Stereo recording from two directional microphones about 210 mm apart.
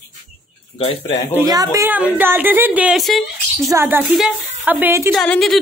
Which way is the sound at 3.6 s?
10° right (ahead or behind).